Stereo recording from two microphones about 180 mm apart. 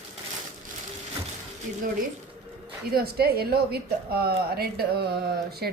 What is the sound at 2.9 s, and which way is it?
A woman's voice, 60° right (ahead or behind).